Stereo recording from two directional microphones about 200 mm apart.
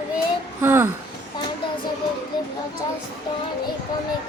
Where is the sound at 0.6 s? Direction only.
10° right (ahead or behind).